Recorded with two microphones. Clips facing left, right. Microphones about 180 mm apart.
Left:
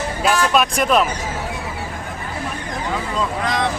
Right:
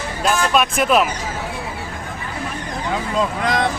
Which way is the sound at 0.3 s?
Centre (ahead or behind).